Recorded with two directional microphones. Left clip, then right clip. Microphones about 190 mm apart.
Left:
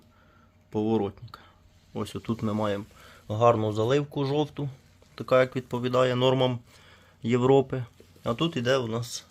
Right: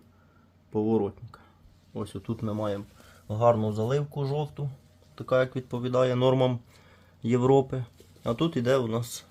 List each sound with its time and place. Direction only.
0.7 s speech: centre (ahead or behind); by 2.8 s 20° left (ahead or behind)
3.2 s speech: 30° left (ahead or behind)
5.1 s speech: 15° left (ahead or behind); by 9.2 s 10° right (ahead or behind)